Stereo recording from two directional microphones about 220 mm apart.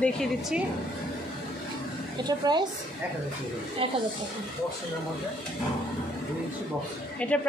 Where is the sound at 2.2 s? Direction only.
20° right (ahead or behind).